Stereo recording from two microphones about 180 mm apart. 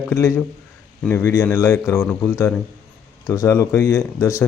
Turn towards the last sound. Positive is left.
turn(degrees=15)  # may be behind; listen again after turning